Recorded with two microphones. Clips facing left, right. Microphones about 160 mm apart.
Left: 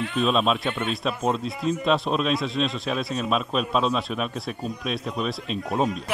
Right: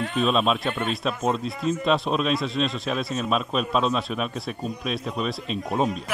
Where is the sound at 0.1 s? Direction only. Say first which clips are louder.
Even; centre (ahead or behind).